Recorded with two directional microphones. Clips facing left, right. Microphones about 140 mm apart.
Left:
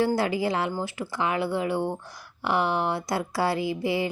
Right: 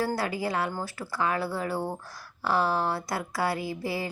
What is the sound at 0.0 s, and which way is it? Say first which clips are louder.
A woman's voice: left 5 dB; 25° left (ahead or behind).